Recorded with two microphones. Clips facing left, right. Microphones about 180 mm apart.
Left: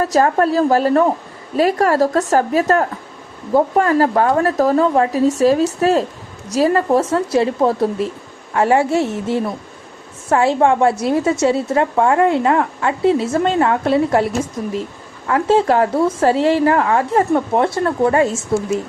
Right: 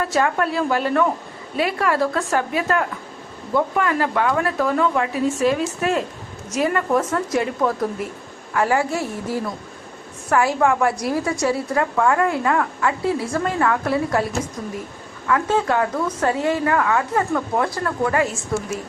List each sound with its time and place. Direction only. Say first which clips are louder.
0.0 s a woman's voice: left 6 dB; 40° left (ahead or behind)
15.3 s a woman's voice: left 5 dB; 30° left (ahead or behind)